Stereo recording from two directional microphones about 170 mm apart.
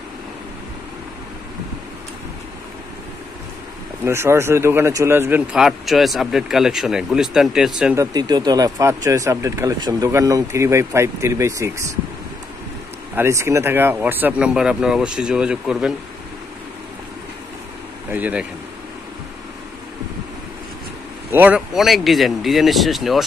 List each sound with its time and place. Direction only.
4.0 s speech: 15° right (ahead or behind)
7.9 s speech: 20° right (ahead or behind)
13.1 s speech: 15° right (ahead or behind)
18.1 s speech: 10° right (ahead or behind)
21.3 s speech: 10° right (ahead or behind)